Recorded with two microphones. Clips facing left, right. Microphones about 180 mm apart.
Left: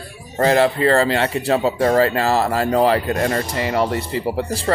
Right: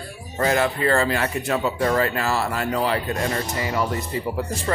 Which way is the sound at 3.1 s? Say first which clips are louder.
Left 5 dB; 55° left (ahead or behind).